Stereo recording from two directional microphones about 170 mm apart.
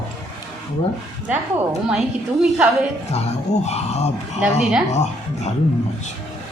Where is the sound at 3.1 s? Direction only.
40° left (ahead or behind).